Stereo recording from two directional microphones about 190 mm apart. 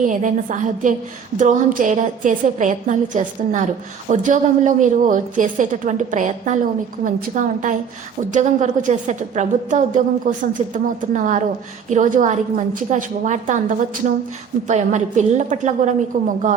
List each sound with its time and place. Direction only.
0.0 s a woman's voice: 40° right (ahead or behind)